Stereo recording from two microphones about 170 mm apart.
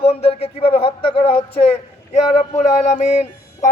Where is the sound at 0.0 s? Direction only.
40° left (ahead or behind).